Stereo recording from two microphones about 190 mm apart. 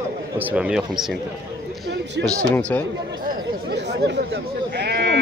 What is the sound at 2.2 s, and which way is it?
Speech, 5° left (ahead or behind).